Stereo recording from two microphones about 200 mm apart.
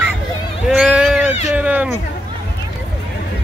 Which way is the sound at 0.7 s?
5° right (ahead or behind).